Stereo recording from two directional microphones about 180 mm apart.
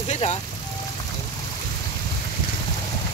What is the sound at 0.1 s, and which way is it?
Vehicle, 40° left (ahead or behind).